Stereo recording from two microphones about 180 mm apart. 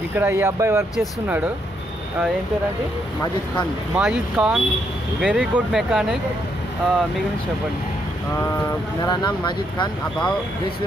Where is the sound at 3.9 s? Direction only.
5° right (ahead or behind).